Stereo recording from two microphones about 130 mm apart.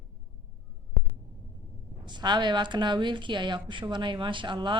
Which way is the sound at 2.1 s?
35° right (ahead or behind).